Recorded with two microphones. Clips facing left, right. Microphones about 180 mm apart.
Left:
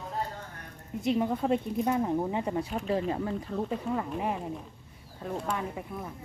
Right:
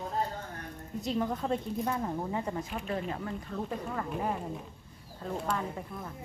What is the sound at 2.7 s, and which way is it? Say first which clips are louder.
Speech: left 5 dB; 30° left (ahead or behind).